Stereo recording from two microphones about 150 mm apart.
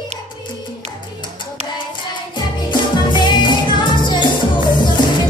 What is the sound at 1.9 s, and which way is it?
Music, 30° left (ahead or behind).